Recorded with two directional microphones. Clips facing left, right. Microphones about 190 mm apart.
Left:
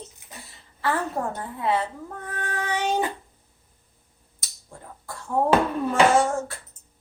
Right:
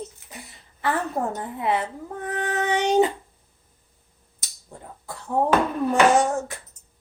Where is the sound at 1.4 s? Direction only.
20° right (ahead or behind).